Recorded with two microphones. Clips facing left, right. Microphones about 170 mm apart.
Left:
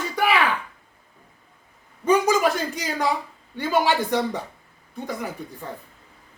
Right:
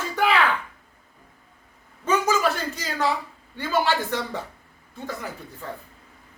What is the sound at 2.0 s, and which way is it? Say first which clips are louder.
A man's voice: left 3 dB; 15° left (ahead or behind).